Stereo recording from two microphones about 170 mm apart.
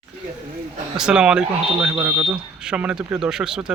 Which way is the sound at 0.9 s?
5° right (ahead or behind).